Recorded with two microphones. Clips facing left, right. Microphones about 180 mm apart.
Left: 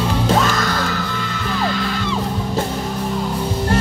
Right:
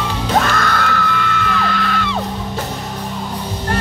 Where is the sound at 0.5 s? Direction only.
60° right (ahead or behind).